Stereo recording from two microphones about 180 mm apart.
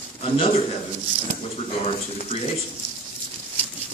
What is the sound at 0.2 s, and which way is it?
Speech, 30° left (ahead or behind).